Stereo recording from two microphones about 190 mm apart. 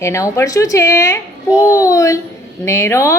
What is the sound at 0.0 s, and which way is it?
Speech, 15° left (ahead or behind).